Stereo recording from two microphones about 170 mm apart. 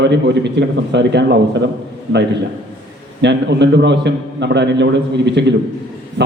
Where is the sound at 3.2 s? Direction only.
90° right.